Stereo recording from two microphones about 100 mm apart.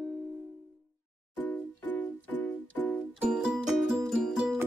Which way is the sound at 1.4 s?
15° left (ahead or behind).